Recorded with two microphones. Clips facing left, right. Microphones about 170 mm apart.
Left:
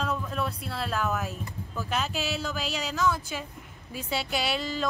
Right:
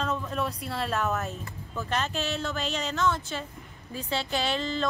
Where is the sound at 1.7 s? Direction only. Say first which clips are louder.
Right 1 dB; 5° left (ahead or behind).